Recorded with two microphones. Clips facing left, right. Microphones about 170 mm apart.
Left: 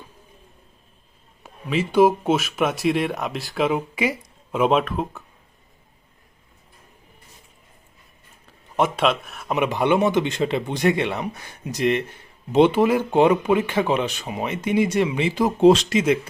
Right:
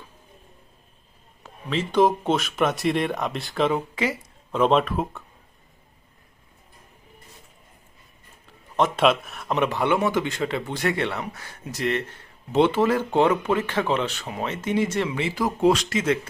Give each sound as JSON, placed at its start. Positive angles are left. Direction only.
{"t": 1.5, "sound": "speech", "side_deg": 10}
{"t": 9.0, "sound": "speech", "side_deg": 0}